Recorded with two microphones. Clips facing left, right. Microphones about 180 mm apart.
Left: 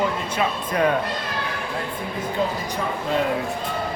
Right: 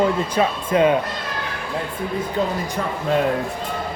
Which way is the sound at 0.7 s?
20° right (ahead or behind).